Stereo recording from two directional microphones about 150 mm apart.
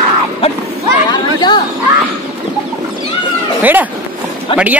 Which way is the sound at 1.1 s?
30° left (ahead or behind).